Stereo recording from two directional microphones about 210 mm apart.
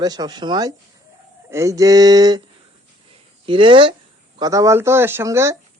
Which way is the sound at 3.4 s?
25° right (ahead or behind).